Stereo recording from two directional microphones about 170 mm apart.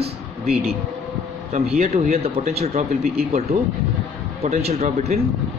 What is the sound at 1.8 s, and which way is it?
Speech, 40° right (ahead or behind).